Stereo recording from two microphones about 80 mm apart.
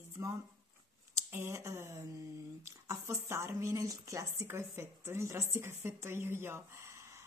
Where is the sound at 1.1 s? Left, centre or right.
Right.